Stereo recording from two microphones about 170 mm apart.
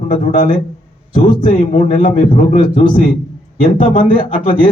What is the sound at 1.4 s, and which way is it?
A man's voice, 50° left (ahead or behind).